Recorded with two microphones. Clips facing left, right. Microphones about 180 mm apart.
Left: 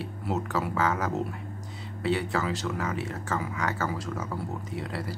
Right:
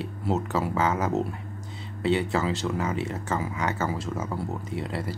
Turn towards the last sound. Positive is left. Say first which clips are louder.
# right 3 dB
turn(degrees=-25)  # may be behind; listen again after turning